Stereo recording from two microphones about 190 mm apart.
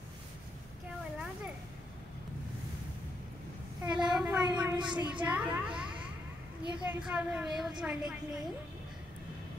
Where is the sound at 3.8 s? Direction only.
5° right (ahead or behind).